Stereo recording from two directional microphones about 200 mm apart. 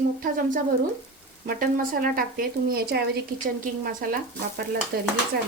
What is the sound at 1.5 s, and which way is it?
A woman's voice, 45° right (ahead or behind).